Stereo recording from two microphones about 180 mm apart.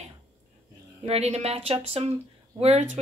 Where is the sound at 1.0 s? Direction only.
35° right (ahead or behind).